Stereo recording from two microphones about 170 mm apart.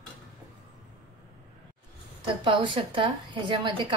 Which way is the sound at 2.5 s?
30° right (ahead or behind).